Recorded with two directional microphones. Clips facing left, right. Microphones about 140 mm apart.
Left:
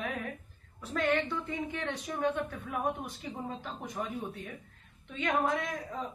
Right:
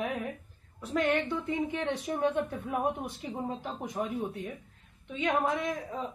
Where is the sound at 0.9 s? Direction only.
10° right (ahead or behind).